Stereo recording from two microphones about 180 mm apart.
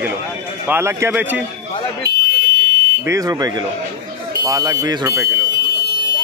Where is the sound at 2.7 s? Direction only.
20° right (ahead or behind).